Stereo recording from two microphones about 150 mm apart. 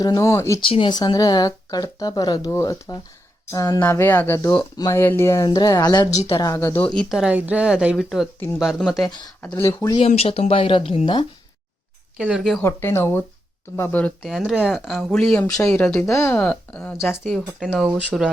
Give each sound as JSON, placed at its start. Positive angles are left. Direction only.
{"t": 0.0, "sound": "speech", "side_deg": 25}
{"t": 0.6, "sound": "speech", "side_deg": 35}
{"t": 3.8, "sound": "speech", "side_deg": 15}
{"t": 6.1, "sound": "speech", "side_deg": 40}
{"t": 6.4, "sound": "speech", "side_deg": 20}
{"t": 6.9, "sound": "speech", "side_deg": 0}
{"t": 9.0, "sound": "speech", "side_deg": 30}
{"t": 9.4, "sound": "speech", "side_deg": 15}
{"t": 10.1, "sound": "speech", "side_deg": 40}
{"t": 12.1, "sound": "speech", "side_deg": -5}
{"t": 12.6, "sound": "speech", "side_deg": 15}
{"t": 14.2, "sound": "speech", "side_deg": 0}